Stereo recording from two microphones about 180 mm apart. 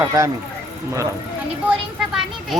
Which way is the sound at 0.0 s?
15° right (ahead or behind).